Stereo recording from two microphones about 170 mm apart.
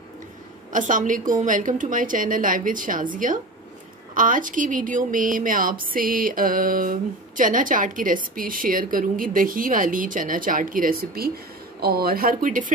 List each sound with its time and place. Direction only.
0.7 s speech: 50° right (ahead or behind)